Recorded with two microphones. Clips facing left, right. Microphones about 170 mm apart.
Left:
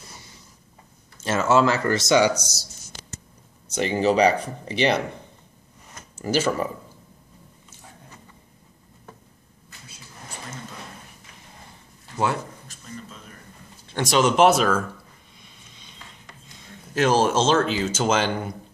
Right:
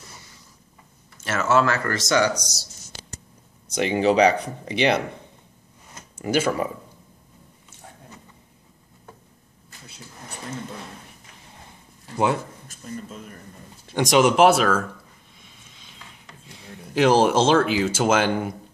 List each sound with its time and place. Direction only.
1.2 s speech: 25° left (ahead or behind)
2.0 s speech: 10° left (ahead or behind)
3.7 s speech: 15° right (ahead or behind)
6.2 s speech: 15° right (ahead or behind)
12.8 s a sound: 45° right (ahead or behind)
13.9 s speech: 15° right (ahead or behind)
16.9 s speech: 15° right (ahead or behind)